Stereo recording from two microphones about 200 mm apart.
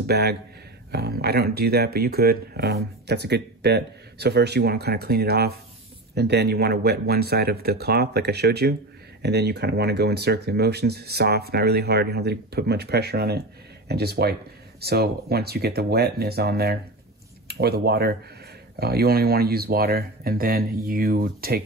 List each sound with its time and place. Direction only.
0.0 s speech: 55° right (ahead or behind)